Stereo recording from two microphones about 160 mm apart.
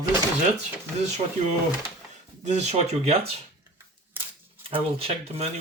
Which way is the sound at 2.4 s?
45° right (ahead or behind).